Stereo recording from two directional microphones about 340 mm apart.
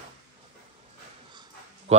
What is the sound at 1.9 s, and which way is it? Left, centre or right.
Speech, centre.